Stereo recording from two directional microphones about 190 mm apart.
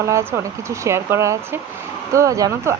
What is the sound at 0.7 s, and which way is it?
Speech, 15° right (ahead or behind).